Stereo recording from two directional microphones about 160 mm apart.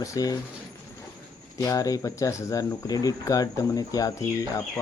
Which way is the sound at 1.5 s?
20° left (ahead or behind).